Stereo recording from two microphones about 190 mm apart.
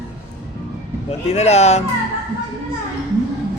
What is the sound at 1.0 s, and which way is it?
Speech, 35° left (ahead or behind).